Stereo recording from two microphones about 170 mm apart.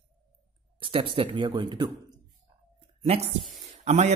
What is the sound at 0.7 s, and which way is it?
A man's voice, 30° right (ahead or behind).